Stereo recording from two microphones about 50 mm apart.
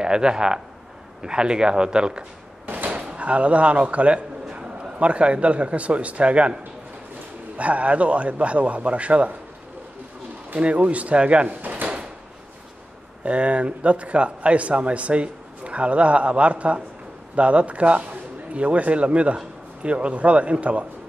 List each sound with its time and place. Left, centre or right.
0.0 s speech: centre
2.6 s a sound: right
2.9 s speech: right
4.5 s a sound: centre
4.9 s a man's voice: right
7.5 s a man's voice: right
10.5 s a man's voice: right
11.6 s drawer open or close: right
13.2 s a man's voice: right